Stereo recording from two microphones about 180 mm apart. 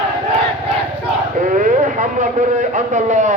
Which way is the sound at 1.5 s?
45° right (ahead or behind).